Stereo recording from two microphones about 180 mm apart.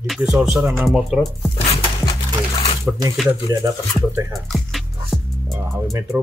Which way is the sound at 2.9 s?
5° right (ahead or behind).